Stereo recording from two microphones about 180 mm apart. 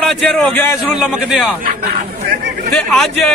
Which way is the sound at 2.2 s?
65° right (ahead or behind).